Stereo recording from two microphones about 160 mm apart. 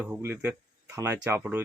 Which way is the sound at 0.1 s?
10° right (ahead or behind).